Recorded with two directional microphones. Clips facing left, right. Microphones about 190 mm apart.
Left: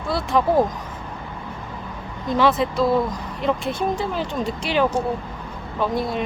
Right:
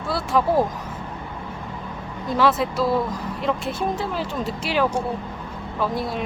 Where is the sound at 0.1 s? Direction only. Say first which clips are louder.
Left 1 dB; 5° right (ahead or behind).